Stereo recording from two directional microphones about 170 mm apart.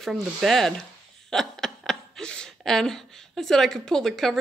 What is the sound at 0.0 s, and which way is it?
Speech, centre (ahead or behind).